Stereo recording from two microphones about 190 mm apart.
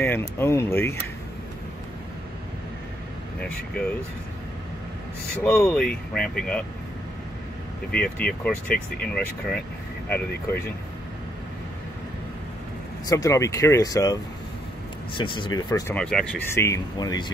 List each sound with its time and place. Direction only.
0.0 s speech: 10° left (ahead or behind)
3.3 s speech: 5° left (ahead or behind)
5.4 s speech: 15° left (ahead or behind)
7.9 s speech: 5° left (ahead or behind)
13.0 s speech: 15° left (ahead or behind)
15.1 s speech: 25° left (ahead or behind)
15.9 s speech: 5° left (ahead or behind)
16.6 s speech: 20° left (ahead or behind)